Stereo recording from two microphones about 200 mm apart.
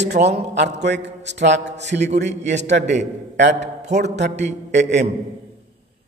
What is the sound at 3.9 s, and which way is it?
A man's voice, 35° right (ahead or behind).